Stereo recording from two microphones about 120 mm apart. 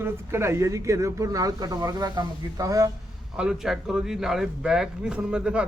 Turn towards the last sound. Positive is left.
turn(degrees=-5)  # may be behind; listen again after turning